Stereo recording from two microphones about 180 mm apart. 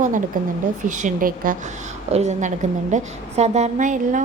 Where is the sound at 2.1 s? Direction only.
40° right (ahead or behind).